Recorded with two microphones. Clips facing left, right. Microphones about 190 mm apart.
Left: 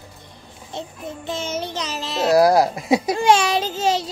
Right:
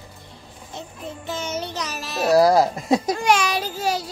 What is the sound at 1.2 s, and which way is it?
Music, 20° left (ahead or behind).